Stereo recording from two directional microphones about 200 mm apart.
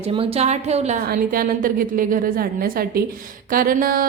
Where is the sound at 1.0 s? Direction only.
45° right (ahead or behind).